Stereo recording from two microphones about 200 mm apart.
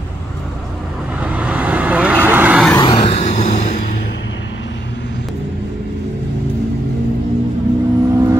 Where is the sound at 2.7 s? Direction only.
25° left (ahead or behind).